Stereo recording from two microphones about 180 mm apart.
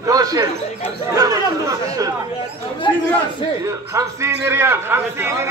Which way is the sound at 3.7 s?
15° right (ahead or behind).